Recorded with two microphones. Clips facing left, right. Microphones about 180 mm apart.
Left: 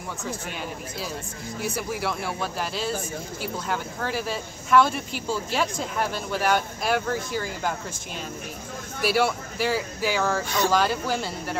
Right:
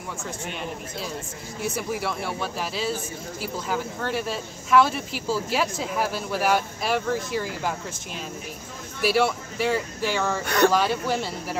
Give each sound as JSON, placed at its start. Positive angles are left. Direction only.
{"t": 0.2, "sound": "speech", "side_deg": 0}
{"t": 9.0, "sound": "speech", "side_deg": 0}
{"t": 10.4, "sound": "speech", "side_deg": -65}
{"t": 10.7, "sound": "speech", "side_deg": 0}